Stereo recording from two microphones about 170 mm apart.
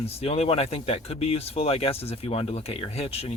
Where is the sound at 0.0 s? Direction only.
35° left (ahead or behind).